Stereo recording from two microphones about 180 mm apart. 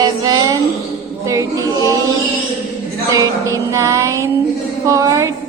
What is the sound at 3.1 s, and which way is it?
Music, 20° right (ahead or behind).